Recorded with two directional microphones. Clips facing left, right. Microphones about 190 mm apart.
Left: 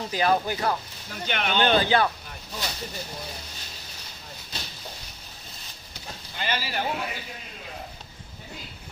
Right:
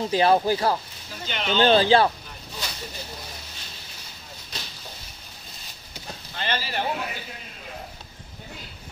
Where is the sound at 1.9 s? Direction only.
30° right (ahead or behind).